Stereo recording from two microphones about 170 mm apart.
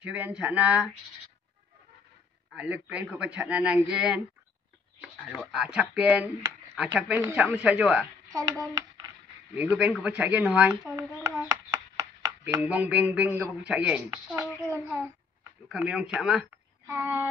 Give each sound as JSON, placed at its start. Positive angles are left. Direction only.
{"t": 0.0, "sound": "a man's voice", "side_deg": -10}
{"t": 2.5, "sound": "a man's voice", "side_deg": -10}
{"t": 5.0, "sound": "a sound", "side_deg": -5}
{"t": 5.4, "sound": "a man's voice", "side_deg": -5}
{"t": 8.4, "sound": "hands", "side_deg": -20}
{"t": 9.6, "sound": "speech", "side_deg": -10}
{"t": 12.5, "sound": "a man's voice", "side_deg": -10}
{"t": 15.7, "sound": "speech", "side_deg": -5}
{"t": 16.8, "sound": "a sound", "side_deg": -15}